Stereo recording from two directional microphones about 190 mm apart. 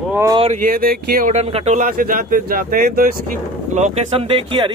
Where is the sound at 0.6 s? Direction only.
50° right (ahead or behind).